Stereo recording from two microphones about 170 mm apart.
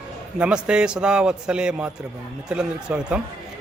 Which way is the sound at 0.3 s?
5° right (ahead or behind).